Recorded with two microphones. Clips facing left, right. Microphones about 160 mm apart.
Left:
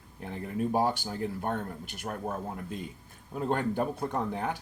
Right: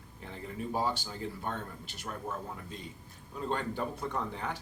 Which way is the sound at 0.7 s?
50° left (ahead or behind).